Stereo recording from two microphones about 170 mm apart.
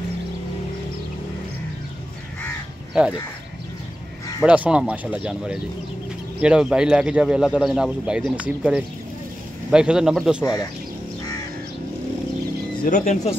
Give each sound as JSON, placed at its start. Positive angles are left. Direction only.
{"t": 4.4, "sound": "speech", "side_deg": -5}
{"t": 10.4, "sound": "speech", "side_deg": 20}
{"t": 12.8, "sound": "speech", "side_deg": 50}